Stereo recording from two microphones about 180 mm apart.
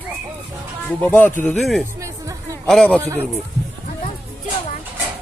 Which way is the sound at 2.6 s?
5° left (ahead or behind).